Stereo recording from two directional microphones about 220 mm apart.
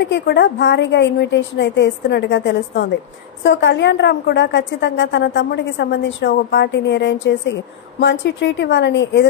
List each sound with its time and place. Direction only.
0.1 s a woman's voice: 50° left (ahead or behind)